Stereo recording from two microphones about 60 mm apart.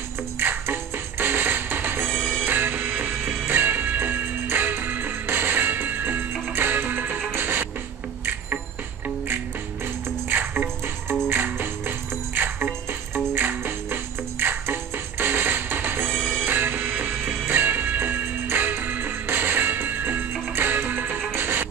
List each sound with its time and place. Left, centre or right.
0.4 s music: right
2.0 s music: centre
2.4 s music: right
10.3 s music: right
16.1 s music: centre
16.4 s music: right